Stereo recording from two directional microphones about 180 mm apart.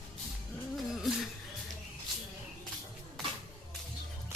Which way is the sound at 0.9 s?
Centre (ahead or behind).